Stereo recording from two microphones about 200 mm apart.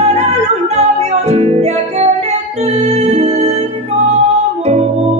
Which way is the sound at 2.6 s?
35° right (ahead or behind).